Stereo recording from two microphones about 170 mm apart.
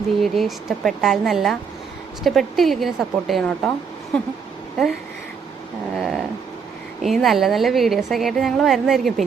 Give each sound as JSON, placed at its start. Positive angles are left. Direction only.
{"t": 0.2, "sound": "a woman's voice", "side_deg": 0}
{"t": 6.0, "sound": "dog", "side_deg": 0}
{"t": 7.0, "sound": "a woman's voice", "side_deg": 0}